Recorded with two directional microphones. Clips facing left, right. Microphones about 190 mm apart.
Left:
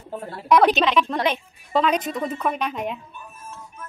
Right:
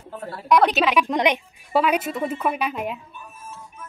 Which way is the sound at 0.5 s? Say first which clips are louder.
Left 1 dB; centre (ahead or behind).